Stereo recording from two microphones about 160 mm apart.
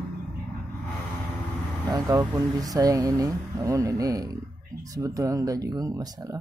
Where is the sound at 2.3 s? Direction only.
25° right (ahead or behind).